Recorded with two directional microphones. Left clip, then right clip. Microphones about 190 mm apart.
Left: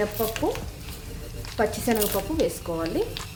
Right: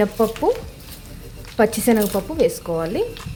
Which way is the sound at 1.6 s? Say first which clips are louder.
Right 7 dB; 45° right (ahead or behind).